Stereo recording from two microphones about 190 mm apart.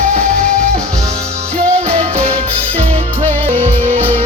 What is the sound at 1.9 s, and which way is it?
Music, 30° right (ahead or behind).